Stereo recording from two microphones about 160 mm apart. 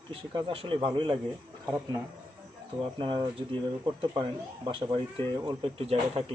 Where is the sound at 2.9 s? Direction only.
30° right (ahead or behind).